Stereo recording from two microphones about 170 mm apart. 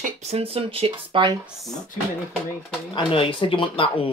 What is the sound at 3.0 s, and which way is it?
Speech, 30° left (ahead or behind).